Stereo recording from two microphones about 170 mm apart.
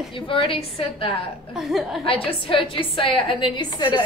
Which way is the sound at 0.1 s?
30° left (ahead or behind).